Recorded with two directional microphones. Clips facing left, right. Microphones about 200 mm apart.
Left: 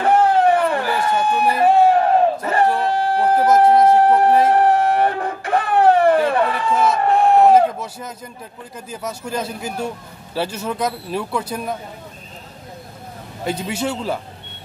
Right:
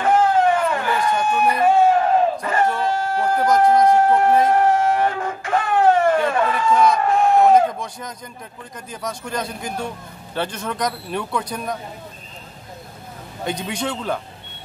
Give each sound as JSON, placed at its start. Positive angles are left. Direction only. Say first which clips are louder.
{"t": 0.0, "sound": "a sound", "louder": "left 2 dB", "side_deg": 35}
{"t": 1.6, "sound": "battle cry", "louder": "left 2 dB", "side_deg": 35}
{"t": 3.6, "sound": "speech", "louder": "even", "side_deg": 25}
{"t": 7.1, "sound": "a sound", "louder": "left 4 dB", "side_deg": 35}
{"t": 8.9, "sound": "a man's voice", "louder": "left 1 dB", "side_deg": 5}
{"t": 13.4, "sound": "a man's voice", "louder": "left 2 dB", "side_deg": 5}